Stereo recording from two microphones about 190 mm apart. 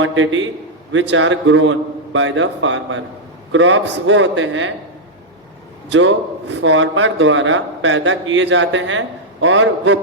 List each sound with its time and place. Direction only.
0.0 s a man's voice: 90° right
5.9 s a man's voice: 80° right